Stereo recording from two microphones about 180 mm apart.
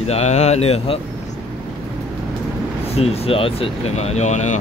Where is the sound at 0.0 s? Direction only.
35° left (ahead or behind).